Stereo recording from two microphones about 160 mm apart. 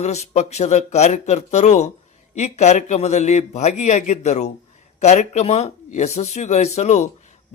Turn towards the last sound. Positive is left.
turn(degrees=45)  # may be behind; listen again after turning